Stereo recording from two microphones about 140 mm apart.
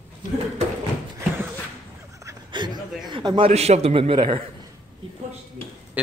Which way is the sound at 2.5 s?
30° right (ahead or behind).